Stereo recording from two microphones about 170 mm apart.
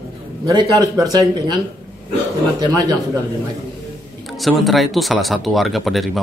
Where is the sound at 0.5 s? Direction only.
20° right (ahead or behind).